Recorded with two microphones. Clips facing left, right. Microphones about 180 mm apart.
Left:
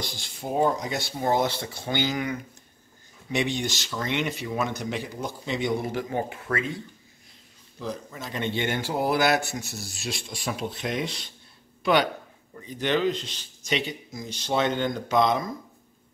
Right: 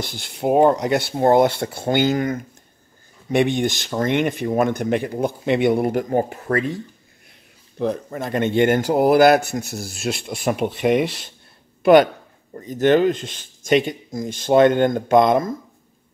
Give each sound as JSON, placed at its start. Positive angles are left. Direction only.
{"t": 0.0, "sound": "speech", "side_deg": -60}
{"t": 3.3, "sound": "speech", "side_deg": -55}
{"t": 7.8, "sound": "speech", "side_deg": -55}
{"t": 9.7, "sound": "speech", "side_deg": -60}
{"t": 11.8, "sound": "speech", "side_deg": -50}